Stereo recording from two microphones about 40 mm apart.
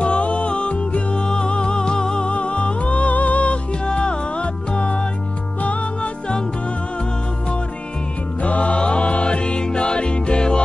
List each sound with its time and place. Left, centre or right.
0.0 s music: left
3.8 s music: left
8.4 s music: left